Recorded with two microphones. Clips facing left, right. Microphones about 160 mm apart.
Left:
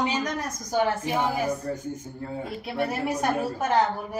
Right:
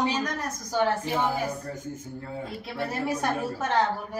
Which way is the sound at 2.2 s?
25° left (ahead or behind).